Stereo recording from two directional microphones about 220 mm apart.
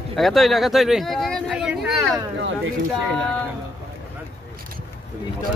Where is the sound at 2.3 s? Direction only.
55° right (ahead or behind).